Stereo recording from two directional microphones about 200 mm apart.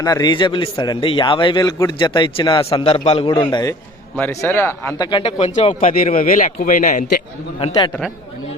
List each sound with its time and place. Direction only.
0.0 s a man's voice: 20° left (ahead or behind)
5.1 s speech: 30° left (ahead or behind)
7.6 s a man's voice: 20° left (ahead or behind)